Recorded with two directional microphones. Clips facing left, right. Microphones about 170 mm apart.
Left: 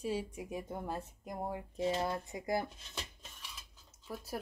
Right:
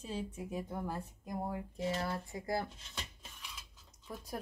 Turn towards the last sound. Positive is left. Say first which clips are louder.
# left 2 dB
turn(degrees=5)  # may be behind; listen again after turning